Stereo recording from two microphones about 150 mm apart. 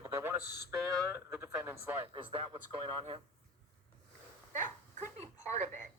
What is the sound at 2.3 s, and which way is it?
Speech, 40° right (ahead or behind).